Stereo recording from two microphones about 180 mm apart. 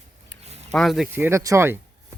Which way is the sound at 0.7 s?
Centre (ahead or behind).